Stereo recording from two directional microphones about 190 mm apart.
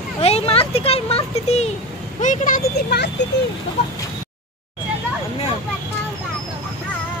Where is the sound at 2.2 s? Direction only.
45° left (ahead or behind).